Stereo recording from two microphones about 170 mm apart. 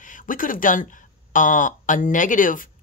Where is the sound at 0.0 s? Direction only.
50° left (ahead or behind).